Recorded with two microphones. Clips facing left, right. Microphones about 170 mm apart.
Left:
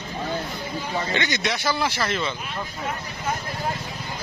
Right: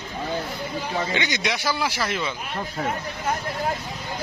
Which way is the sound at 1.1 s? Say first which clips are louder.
Even; 15° right (ahead or behind).